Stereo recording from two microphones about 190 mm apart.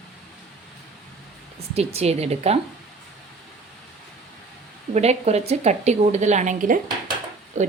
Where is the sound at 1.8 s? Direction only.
35° right (ahead or behind).